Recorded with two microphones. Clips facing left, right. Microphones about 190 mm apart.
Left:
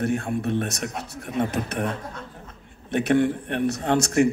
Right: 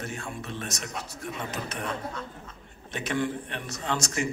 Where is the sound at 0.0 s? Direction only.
60° left (ahead or behind).